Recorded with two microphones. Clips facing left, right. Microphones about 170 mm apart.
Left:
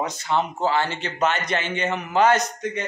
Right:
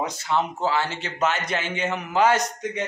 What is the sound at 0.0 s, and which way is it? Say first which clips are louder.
A man's voice: left 1 dB; 5° right (ahead or behind).